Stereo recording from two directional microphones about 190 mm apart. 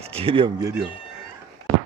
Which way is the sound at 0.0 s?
30° right (ahead or behind).